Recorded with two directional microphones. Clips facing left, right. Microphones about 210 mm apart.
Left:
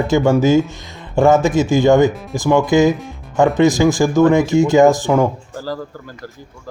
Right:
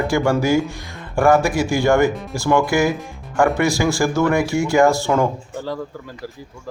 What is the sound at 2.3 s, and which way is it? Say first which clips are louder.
Speech: left 5 dB; 20° left (ahead or behind).